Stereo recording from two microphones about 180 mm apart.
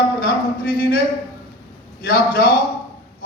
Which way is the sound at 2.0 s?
55° left (ahead or behind).